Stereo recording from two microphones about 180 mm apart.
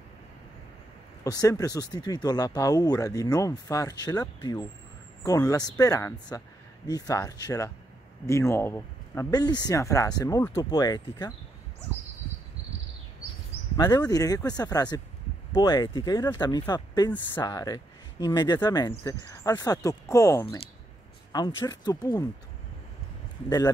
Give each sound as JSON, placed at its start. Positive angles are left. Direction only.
{"t": 1.2, "sound": "speech", "side_deg": 20}
{"t": 13.8, "sound": "speech", "side_deg": 20}